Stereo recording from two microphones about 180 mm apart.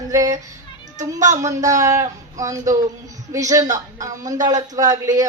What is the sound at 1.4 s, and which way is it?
Speech, 20° right (ahead or behind).